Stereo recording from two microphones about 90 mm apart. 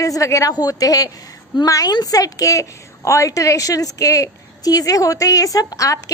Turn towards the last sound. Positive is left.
turn(degrees=40)  # may be behind; listen again after turning